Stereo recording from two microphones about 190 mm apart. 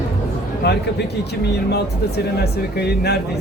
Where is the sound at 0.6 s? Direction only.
60° left (ahead or behind).